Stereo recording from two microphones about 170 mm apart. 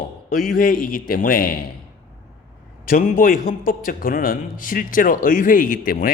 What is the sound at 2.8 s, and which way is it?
A man's voice, 55° left (ahead or behind).